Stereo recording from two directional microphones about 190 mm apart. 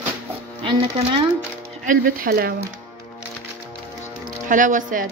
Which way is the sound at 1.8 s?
45° right (ahead or behind).